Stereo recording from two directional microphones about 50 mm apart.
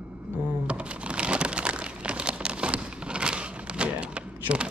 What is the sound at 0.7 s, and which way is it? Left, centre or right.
Crumpling, right.